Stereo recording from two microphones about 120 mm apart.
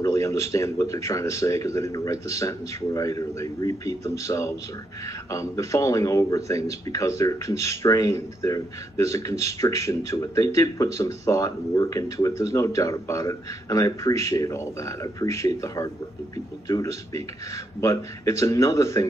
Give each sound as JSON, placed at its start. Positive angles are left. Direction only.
{"t": 0.0, "sound": "speech", "side_deg": 25}